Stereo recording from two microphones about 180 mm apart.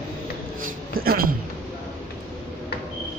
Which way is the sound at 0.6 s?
55° right (ahead or behind).